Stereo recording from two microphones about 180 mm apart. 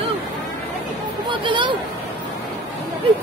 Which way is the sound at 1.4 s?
25° right (ahead or behind).